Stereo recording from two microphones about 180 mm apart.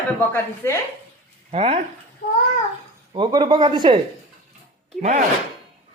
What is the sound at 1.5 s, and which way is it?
Speech, 35° right (ahead or behind).